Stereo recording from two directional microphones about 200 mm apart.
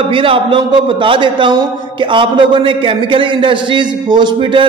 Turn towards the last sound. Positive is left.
turn(degrees=-25)  # may be behind; listen again after turning